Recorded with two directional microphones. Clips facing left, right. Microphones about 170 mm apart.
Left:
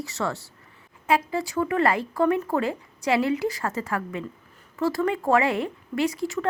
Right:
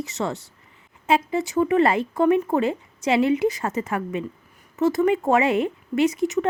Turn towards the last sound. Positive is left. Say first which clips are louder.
# right 5 dB
turn(degrees=-20)  # may be behind; listen again after turning